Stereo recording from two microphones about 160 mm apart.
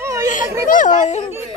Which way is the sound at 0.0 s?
15° right (ahead or behind).